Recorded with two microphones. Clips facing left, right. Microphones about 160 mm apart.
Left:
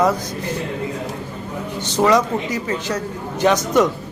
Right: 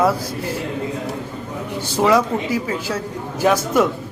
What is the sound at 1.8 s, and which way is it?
A man's voice, 5° right (ahead or behind).